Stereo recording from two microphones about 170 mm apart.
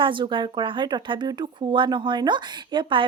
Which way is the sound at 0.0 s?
30° right (ahead or behind).